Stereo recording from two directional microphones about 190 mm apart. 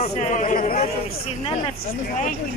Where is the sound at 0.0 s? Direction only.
40° left (ahead or behind).